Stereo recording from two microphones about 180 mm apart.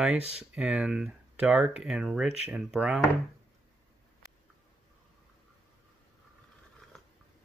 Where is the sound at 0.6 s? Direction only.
5° right (ahead or behind).